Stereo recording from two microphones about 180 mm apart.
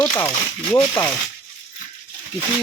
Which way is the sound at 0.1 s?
15° left (ahead or behind).